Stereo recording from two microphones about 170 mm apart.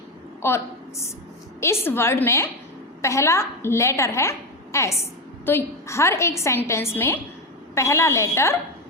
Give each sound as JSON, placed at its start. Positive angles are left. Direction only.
{"t": 0.4, "sound": "a woman's voice", "side_deg": 15}